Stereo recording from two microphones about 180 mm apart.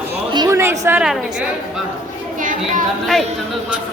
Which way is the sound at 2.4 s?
45° right (ahead or behind).